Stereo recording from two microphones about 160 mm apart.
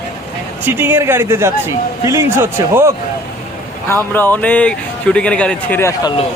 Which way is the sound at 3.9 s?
15° left (ahead or behind).